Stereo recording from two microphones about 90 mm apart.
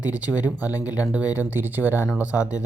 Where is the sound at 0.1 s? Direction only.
15° right (ahead or behind).